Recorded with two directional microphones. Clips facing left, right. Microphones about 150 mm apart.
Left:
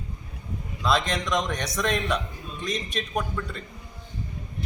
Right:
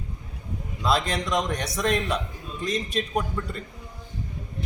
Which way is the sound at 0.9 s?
35° right (ahead or behind).